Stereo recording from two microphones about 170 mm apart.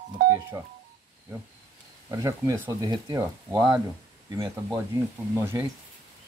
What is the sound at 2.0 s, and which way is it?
Speech, 20° right (ahead or behind).